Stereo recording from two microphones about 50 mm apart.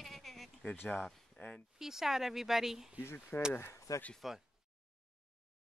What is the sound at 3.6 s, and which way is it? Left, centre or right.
Speech, left.